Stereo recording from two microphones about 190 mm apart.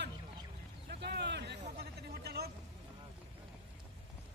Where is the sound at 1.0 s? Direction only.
65° right (ahead or behind).